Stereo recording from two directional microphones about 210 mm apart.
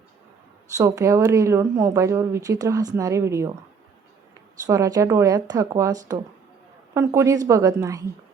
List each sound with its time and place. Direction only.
0.8 s speech: 15° right (ahead or behind)
4.6 s speech: 15° right (ahead or behind)